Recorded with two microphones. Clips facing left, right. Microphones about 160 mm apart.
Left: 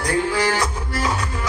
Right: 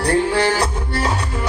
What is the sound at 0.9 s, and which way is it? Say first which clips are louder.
Music: right 2 dB; 65° right (ahead or behind).